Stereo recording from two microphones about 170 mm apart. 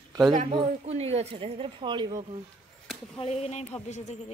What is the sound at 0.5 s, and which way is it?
Speech, 35° right (ahead or behind).